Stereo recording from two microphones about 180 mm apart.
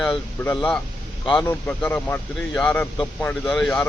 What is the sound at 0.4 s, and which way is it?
A man's voice, 10° left (ahead or behind).